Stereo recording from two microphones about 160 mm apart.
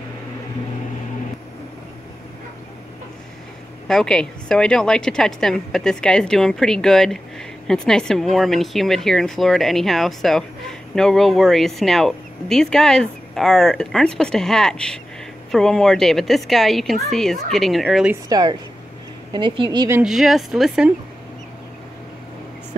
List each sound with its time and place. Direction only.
3.8 s a woman's voice: 5° left (ahead or behind)
18.3 s a woman's voice: 25° right (ahead or behind)
19.9 s a woman's voice: 5° right (ahead or behind)